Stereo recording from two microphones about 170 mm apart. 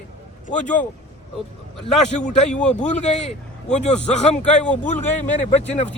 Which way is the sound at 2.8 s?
45° left (ahead or behind).